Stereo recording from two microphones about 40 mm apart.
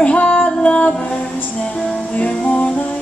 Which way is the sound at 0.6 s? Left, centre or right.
Left.